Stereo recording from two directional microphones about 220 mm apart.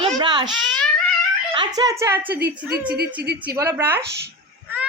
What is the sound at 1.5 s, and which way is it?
A woman's voice, 20° right (ahead or behind).